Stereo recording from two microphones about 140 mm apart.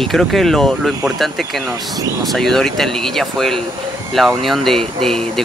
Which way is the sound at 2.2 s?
Centre (ahead or behind).